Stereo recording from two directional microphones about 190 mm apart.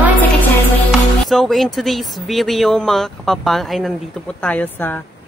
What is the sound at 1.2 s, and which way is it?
Speech, centre (ahead or behind).